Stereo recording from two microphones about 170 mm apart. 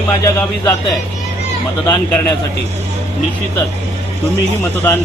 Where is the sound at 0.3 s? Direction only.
20° left (ahead or behind).